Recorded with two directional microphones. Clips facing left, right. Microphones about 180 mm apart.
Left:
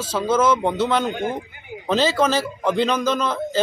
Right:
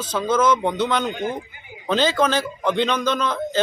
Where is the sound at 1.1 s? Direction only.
50° left (ahead or behind).